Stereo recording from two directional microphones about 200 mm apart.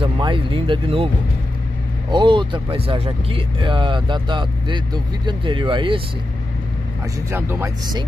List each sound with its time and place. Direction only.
0.0 s speech: 25° right (ahead or behind)
7.2 s speech: 10° right (ahead or behind)